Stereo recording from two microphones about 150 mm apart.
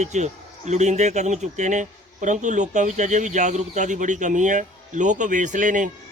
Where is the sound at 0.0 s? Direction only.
50° right (ahead or behind).